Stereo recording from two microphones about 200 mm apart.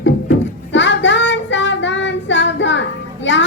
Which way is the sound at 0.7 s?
65° left (ahead or behind).